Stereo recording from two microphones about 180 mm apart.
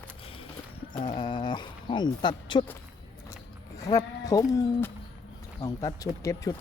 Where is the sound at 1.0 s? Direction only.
25° left (ahead or behind).